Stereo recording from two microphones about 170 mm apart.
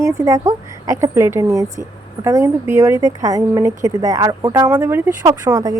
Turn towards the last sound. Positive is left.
turn(degrees=-20)  # may be behind; listen again after turning